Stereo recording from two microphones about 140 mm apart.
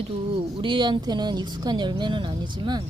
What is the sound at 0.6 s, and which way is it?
Speech, 35° right (ahead or behind).